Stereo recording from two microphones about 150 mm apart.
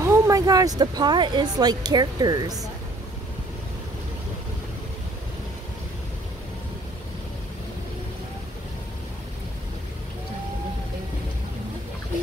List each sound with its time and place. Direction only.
0.0 s speech: 20° right (ahead or behind)